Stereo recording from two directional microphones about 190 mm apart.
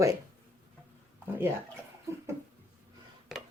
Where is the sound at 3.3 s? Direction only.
Centre (ahead or behind).